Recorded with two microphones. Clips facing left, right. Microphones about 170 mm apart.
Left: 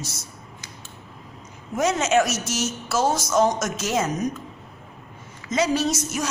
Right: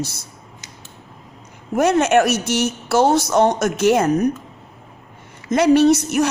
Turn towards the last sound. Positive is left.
turn(degrees=-60)  # may be behind; listen again after turning